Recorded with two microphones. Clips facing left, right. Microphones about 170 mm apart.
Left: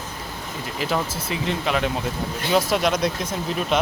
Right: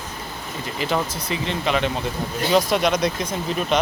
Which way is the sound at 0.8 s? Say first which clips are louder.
Right 1 dB; 5° left (ahead or behind).